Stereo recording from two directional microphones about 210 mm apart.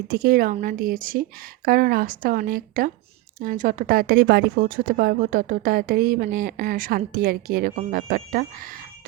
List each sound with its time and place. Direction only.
0.1 s a woman's voice: 45° right (ahead or behind)